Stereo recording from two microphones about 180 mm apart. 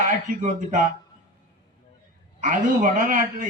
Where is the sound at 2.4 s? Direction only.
45° right (ahead or behind).